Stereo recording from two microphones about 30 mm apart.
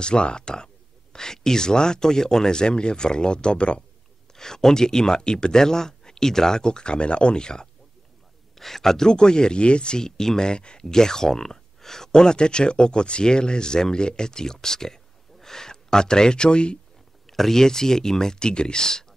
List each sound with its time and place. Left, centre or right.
0.0 s speech: left
4.4 s speech: centre
8.5 s speech: centre; by 9.9 s left
9.9 s speech: centre
17.3 s speech: centre
18.5 s speech: left